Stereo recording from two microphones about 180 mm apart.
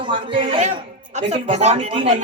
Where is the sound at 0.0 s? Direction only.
30° right (ahead or behind).